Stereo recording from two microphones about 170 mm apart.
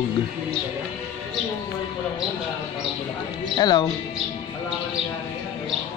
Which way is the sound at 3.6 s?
25° left (ahead or behind).